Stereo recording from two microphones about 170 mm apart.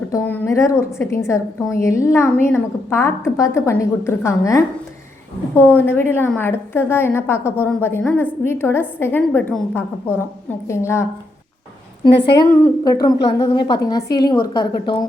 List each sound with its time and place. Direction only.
0.1 s a woman's voice: 15° left (ahead or behind)
12.1 s a woman's voice: 85° left
12.6 s a woman's voice: 20° left (ahead or behind)